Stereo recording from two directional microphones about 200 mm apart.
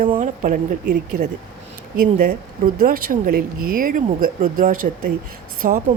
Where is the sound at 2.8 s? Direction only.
45° right (ahead or behind).